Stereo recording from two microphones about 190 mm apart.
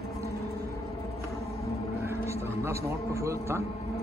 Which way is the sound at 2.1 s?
15° right (ahead or behind).